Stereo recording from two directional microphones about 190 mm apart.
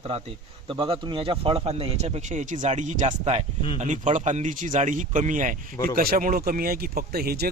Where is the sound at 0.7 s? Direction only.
25° right (ahead or behind).